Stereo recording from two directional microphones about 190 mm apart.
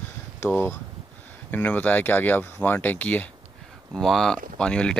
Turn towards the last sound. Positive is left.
turn(degrees=5)  # may be behind; listen again after turning